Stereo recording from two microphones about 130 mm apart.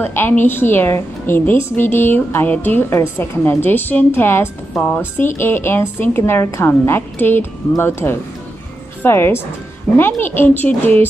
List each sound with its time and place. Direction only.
0.0 s a woman's voice: 15° left (ahead or behind)